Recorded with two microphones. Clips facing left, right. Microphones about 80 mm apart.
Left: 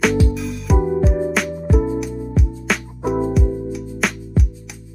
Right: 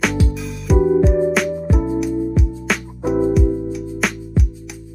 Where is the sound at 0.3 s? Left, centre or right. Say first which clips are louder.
Right 2 dB; centre.